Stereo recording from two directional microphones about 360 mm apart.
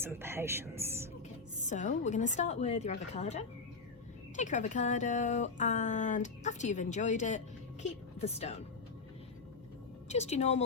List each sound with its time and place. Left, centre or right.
0.0 s speech: centre
1.6 s speech: centre
10.1 s a woman's voice: centre